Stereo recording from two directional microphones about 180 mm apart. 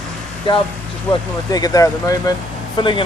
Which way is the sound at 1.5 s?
20° left (ahead or behind).